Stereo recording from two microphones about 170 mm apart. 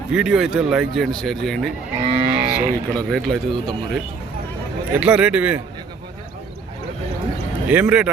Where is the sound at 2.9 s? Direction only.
5° left (ahead or behind).